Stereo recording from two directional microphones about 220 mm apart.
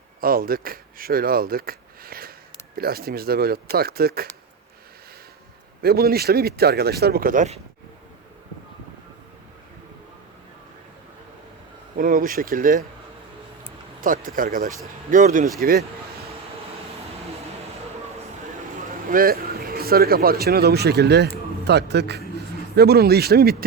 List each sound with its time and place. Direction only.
0.2 s speech: 40° right (ahead or behind)
5.8 s speech: 45° right (ahead or behind)
11.9 s speech: 40° right (ahead or behind)
14.0 s speech: 40° right (ahead or behind)
19.0 s speech: 40° right (ahead or behind)